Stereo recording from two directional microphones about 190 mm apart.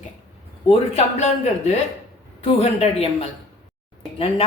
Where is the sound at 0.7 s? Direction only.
35° left (ahead or behind).